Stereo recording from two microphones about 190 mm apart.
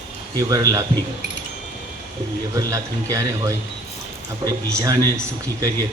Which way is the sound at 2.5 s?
15° right (ahead or behind).